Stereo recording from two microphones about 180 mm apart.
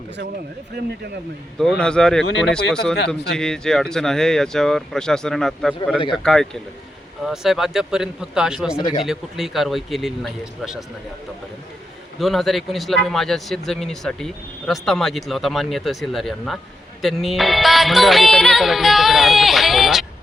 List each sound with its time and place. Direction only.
0.8 s speech: 65° right (ahead or behind)
1.5 s speech: centre (ahead or behind)
3.3 s speech: 5° left (ahead or behind)
8.8 s speech: 25° left (ahead or behind)
9.0 s speech: centre (ahead or behind)
12.2 s speech: centre (ahead or behind)